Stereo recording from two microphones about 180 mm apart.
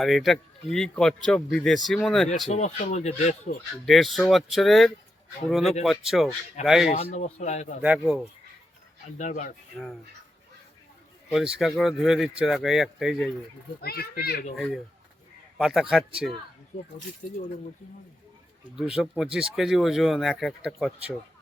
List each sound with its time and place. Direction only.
0.0 s speech: centre (ahead or behind)
2.5 s speech: 40° left (ahead or behind)
3.8 s speech: centre (ahead or behind)
6.9 s speech: 35° left (ahead or behind)
7.8 s speech: 5° right (ahead or behind)
9.1 s speech: 45° left (ahead or behind)
9.7 s speech: centre (ahead or behind)
11.3 s speech: 5° right (ahead or behind)
13.8 s a child's voice: 60° left (ahead or behind)
14.5 s speech: centre (ahead or behind)
18.8 s speech: 5° right (ahead or behind)